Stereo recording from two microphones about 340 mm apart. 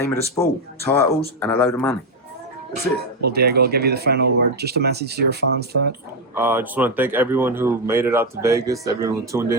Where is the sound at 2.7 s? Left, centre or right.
Right.